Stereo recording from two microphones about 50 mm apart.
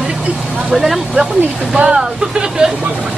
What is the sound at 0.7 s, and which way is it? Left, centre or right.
Speech, centre.